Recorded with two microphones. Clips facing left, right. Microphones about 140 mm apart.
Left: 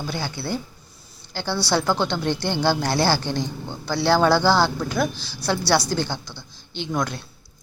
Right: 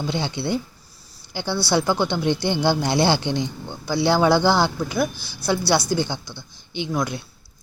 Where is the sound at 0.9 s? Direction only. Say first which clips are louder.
Left 2 dB; centre (ahead or behind).